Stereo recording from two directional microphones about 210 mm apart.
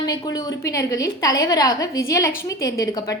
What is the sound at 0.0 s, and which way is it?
A woman's voice, 15° left (ahead or behind).